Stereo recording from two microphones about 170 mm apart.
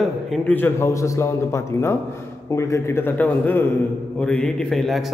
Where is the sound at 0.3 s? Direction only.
10° left (ahead or behind).